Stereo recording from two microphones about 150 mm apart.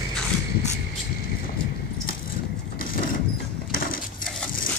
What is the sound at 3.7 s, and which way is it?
Dishes, 70° left (ahead or behind).